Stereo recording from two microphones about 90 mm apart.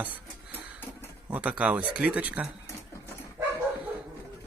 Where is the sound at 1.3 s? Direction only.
15° right (ahead or behind).